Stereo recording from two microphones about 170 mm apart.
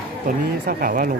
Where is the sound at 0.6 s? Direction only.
60° right (ahead or behind).